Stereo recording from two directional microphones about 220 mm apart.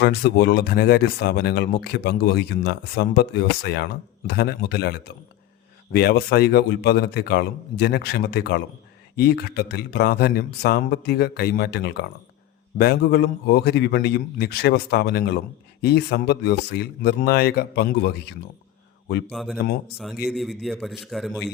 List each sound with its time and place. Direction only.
0.0 s speech: 45° left (ahead or behind)
19.3 s a man's voice: centre (ahead or behind)